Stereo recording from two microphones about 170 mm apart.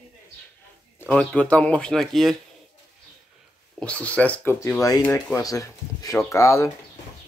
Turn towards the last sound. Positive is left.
turn(degrees=15)  # may be behind; listen again after turning